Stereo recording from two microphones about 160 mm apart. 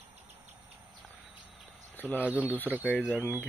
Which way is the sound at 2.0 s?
10° left (ahead or behind).